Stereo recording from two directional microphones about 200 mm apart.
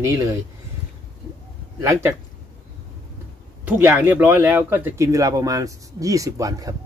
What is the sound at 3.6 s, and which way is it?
Speech, 10° right (ahead or behind).